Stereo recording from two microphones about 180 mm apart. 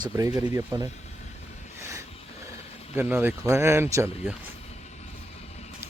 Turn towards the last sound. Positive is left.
turn(degrees=-15)  # may be behind; listen again after turning